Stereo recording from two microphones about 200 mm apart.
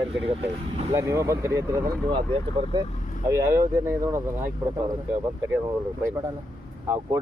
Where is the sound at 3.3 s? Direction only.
15° right (ahead or behind).